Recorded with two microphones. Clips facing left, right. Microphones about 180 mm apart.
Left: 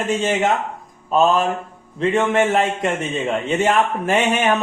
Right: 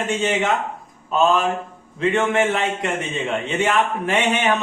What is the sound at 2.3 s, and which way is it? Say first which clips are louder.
A man's voice: left 3 dB; 40° left (ahead or behind).